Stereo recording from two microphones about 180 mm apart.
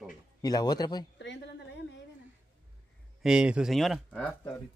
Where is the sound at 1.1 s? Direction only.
75° left (ahead or behind).